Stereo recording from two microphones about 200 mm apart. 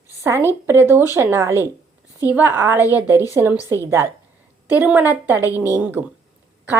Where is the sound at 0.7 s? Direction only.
10° right (ahead or behind).